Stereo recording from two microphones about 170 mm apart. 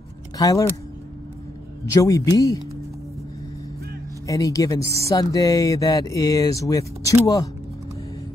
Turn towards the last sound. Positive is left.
turn(degrees=20)  # may be behind; listen again after turning